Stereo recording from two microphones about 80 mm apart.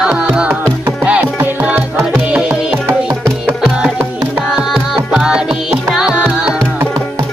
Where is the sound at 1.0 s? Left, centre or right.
Centre.